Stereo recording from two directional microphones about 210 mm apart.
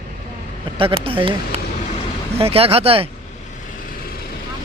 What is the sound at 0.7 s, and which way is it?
Speech, 25° right (ahead or behind).